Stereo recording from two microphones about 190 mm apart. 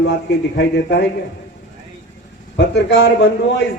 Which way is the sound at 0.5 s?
70° left (ahead or behind).